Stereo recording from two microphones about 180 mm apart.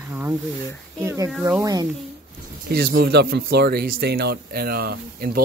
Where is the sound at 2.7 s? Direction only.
60° right (ahead or behind).